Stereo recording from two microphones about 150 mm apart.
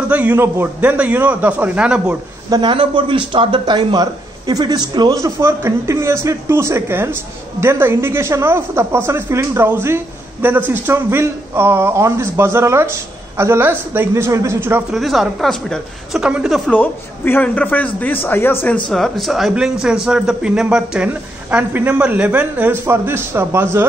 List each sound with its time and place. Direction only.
0.1 s speech: 10° right (ahead or behind)
2.5 s speech: 30° right (ahead or behind); by 14.8 s 15° right (ahead or behind)
14.9 s a woman's voice: centre (ahead or behind)
18.9 s speech: centre (ahead or behind); by 23.9 s 15° right (ahead or behind)